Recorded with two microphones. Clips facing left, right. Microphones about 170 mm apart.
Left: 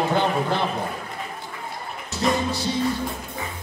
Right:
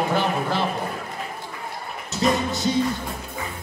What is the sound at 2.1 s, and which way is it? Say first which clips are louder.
Music: right 1 dB; 20° right (ahead or behind).